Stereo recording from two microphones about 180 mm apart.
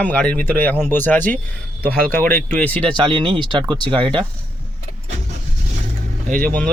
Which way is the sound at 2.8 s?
25° right (ahead or behind).